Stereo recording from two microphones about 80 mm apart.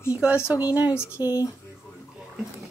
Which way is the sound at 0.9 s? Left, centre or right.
Left.